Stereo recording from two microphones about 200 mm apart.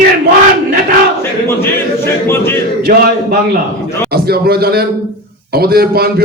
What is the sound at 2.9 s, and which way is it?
A man's voice, 45° right (ahead or behind).